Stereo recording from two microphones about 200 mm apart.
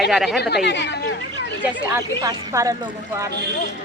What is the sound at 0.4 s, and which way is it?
Speech, 55° left (ahead or behind).